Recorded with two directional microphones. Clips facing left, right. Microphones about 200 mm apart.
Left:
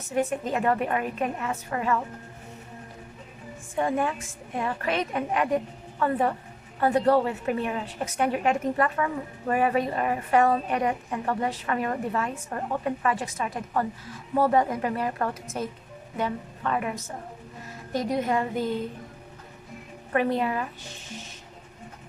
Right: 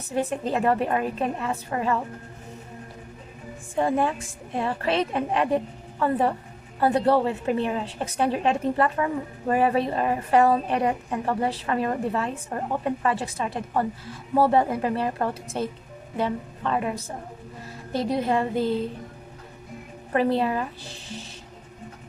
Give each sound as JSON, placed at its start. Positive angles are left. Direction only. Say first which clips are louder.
{"t": 0.1, "sound": "a woman's voice", "louder": "right 1 dB", "side_deg": -35}
{"t": 3.8, "sound": "a woman's voice", "louder": "right 3 dB", "side_deg": -30}
{"t": 20.1, "sound": "a woman's voice", "louder": "right 2 dB", "side_deg": -35}